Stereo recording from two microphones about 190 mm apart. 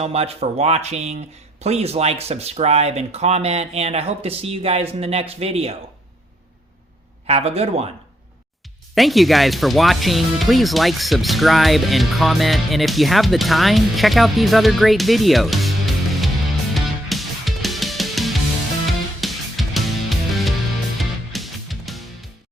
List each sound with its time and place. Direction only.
0.0 s speech: 35° right (ahead or behind)
7.3 s speech: 35° right (ahead or behind)
9.0 s speech: centre (ahead or behind)
16.7 s music: centre (ahead or behind)